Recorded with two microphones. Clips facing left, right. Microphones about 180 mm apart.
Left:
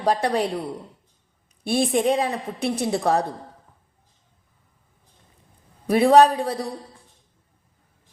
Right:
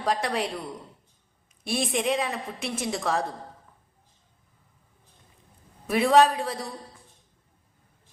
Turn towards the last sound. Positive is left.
turn(degrees=35)  # may be behind; listen again after turning